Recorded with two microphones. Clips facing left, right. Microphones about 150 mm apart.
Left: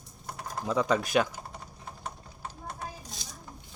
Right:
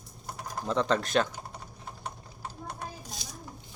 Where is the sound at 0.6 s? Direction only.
10° left (ahead or behind).